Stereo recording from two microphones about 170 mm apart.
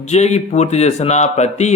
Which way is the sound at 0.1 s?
40° left (ahead or behind).